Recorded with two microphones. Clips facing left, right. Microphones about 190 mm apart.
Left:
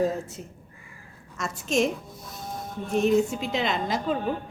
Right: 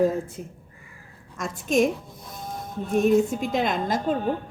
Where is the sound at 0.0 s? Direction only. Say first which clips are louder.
Right 3 dB; 55° right (ahead or behind).